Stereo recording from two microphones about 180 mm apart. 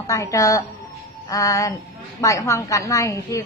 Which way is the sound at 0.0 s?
20° left (ahead or behind).